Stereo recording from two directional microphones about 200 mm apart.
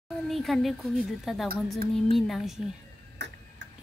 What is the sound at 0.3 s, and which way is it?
A woman's voice, centre (ahead or behind).